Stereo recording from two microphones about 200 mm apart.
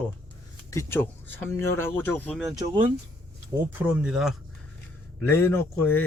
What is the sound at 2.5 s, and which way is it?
Speech, 20° right (ahead or behind).